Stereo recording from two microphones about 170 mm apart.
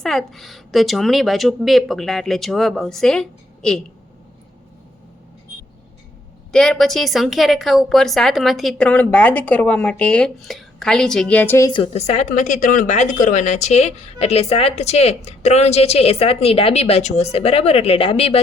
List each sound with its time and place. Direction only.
0.0 s a woman's voice: centre (ahead or behind)
6.5 s a woman's voice: 5° left (ahead or behind)
11.7 s a woman's voice: 35° left (ahead or behind)